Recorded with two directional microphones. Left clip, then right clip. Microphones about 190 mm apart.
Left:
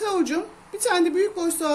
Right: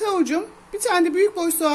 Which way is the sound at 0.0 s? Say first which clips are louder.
Right 2 dB; 20° right (ahead or behind).